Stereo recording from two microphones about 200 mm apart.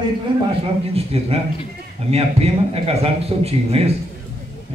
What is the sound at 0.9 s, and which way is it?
A man's voice, 30° right (ahead or behind).